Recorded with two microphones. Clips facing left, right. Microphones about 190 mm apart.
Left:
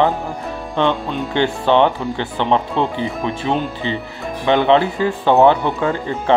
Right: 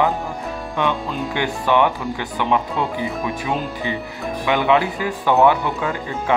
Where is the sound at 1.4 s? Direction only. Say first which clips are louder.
Left 4 dB; 25° left (ahead or behind).